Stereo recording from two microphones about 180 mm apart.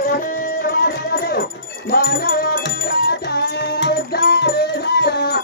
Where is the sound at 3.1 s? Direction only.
65° left (ahead or behind).